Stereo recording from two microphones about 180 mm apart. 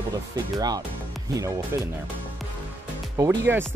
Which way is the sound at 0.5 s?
20° right (ahead or behind).